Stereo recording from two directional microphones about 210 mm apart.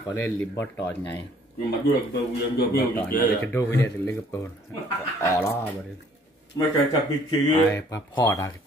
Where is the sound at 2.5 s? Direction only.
50° left (ahead or behind).